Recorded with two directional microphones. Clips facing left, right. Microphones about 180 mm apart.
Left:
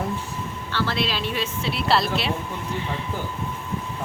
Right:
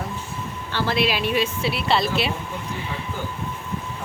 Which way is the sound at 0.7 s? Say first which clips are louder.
Right 3 dB; 15° right (ahead or behind).